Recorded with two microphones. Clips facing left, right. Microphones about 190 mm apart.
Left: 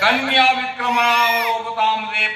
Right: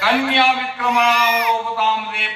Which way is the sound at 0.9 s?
35° left (ahead or behind).